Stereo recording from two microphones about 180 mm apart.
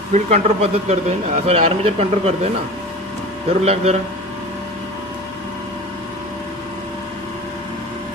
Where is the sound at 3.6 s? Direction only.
35° right (ahead or behind).